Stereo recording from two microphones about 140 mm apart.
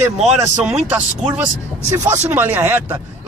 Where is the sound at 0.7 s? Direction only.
10° right (ahead or behind).